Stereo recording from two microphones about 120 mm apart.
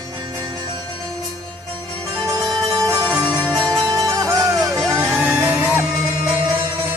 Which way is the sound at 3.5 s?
5° left (ahead or behind).